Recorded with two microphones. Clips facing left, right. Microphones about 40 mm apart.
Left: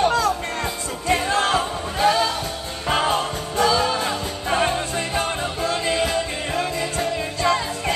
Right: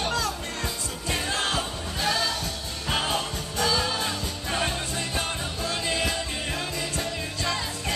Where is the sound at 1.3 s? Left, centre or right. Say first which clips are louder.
Left 7 dB; left.